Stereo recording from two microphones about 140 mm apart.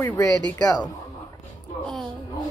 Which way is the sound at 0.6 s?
30° left (ahead or behind).